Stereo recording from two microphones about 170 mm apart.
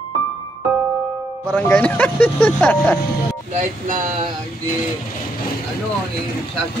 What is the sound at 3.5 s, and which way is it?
Speech, 45° right (ahead or behind).